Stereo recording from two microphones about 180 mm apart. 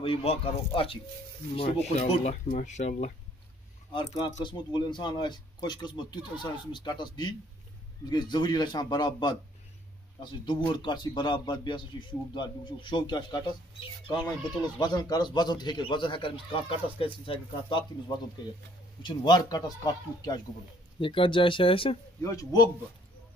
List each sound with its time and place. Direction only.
0.0 s speech: 35° left (ahead or behind)
1.6 s speech: 35° left (ahead or behind)
3.9 s speech: 20° left (ahead or behind)
22.2 s speech: 20° left (ahead or behind)